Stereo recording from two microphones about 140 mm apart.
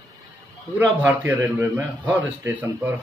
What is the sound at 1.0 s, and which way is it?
A man's voice, 10° right (ahead or behind).